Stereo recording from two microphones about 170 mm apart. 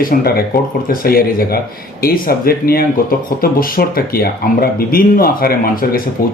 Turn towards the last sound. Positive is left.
turn(degrees=55)  # may be behind; listen again after turning